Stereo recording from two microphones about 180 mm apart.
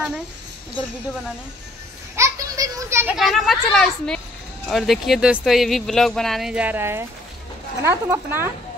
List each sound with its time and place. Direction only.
2.1 s children playing: 20° right (ahead or behind)
3.2 s speech: centre (ahead or behind)